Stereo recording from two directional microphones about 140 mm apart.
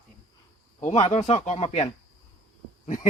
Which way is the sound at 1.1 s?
40° left (ahead or behind).